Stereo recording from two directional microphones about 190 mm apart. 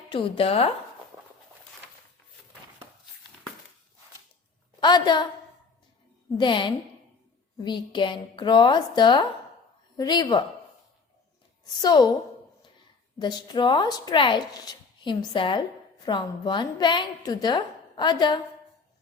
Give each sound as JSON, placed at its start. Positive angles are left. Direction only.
{"t": 0.1, "sound": "speech", "side_deg": 30}
{"t": 4.8, "sound": "a woman's voice", "side_deg": 20}
{"t": 6.3, "sound": "speech", "side_deg": 25}
{"t": 11.6, "sound": "speech", "side_deg": 20}
{"t": 13.1, "sound": "speech", "side_deg": 20}